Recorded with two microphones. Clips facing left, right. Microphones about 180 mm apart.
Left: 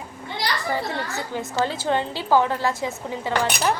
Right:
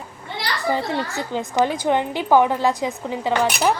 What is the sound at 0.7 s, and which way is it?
A woman's voice, 20° right (ahead or behind).